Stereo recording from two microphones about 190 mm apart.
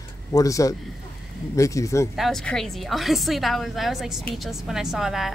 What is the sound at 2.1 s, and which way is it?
Speech, centre (ahead or behind).